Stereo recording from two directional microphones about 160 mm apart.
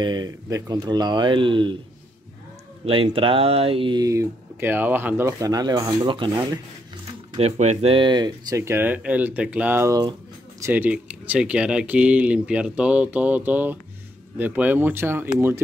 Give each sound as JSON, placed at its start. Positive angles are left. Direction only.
{"t": 0.0, "sound": "speech", "side_deg": -25}
{"t": 2.8, "sound": "speech", "side_deg": -35}
{"t": 7.3, "sound": "speech", "side_deg": -45}
{"t": 10.6, "sound": "speech", "side_deg": -10}